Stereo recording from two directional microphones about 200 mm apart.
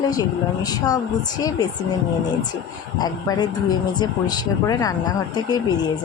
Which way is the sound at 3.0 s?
20° left (ahead or behind).